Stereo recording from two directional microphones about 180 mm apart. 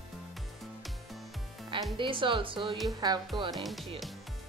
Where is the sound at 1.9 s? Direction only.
25° right (ahead or behind).